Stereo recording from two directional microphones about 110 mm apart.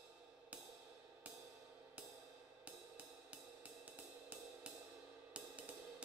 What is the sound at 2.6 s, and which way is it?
Music, 10° right (ahead or behind).